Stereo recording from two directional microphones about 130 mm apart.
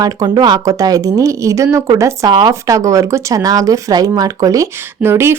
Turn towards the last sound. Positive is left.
turn(degrees=-20)  # may be behind; listen again after turning